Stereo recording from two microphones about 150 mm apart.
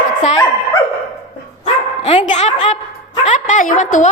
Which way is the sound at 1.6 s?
45° left (ahead or behind).